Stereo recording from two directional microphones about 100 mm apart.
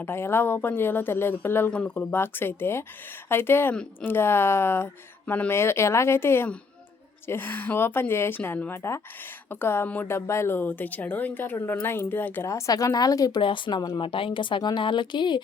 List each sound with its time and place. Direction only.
0.0 s speech: 25° left (ahead or behind)
1.7 s speech: 10° left (ahead or behind)
2.1 s speech: 20° left (ahead or behind)
12.5 s a woman's voice: 35° left (ahead or behind)
13.4 s speech: 55° left (ahead or behind)
14.0 s speech: 60° left (ahead or behind)